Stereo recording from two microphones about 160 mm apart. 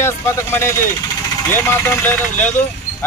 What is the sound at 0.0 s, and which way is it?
Speech, 15° left (ahead or behind).